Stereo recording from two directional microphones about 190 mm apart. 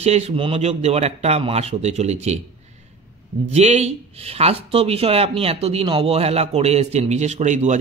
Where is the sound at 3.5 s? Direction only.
35° right (ahead or behind).